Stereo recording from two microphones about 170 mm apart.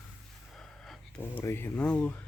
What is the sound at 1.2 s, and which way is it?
Speech, 10° left (ahead or behind).